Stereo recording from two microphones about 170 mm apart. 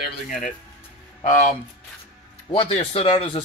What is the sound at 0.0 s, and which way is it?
Speech, 50° left (ahead or behind).